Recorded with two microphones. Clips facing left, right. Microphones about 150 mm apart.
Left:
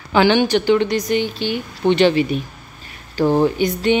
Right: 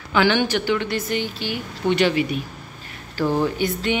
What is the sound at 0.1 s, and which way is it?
A woman's voice, 20° left (ahead or behind).